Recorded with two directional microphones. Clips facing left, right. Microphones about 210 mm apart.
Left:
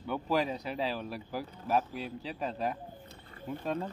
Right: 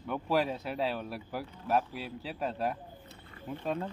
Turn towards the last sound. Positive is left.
turn(degrees=0)  # may be behind; listen again after turning